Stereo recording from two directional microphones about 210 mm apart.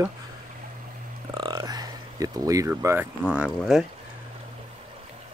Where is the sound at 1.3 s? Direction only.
20° right (ahead or behind); by 3.8 s 5° right (ahead or behind).